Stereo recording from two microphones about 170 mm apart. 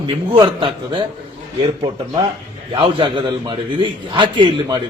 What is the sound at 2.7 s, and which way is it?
A man's voice, 30° right (ahead or behind).